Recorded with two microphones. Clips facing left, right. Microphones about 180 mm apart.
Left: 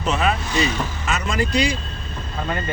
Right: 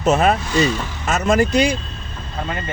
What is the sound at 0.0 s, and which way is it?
Speech, 45° right (ahead or behind).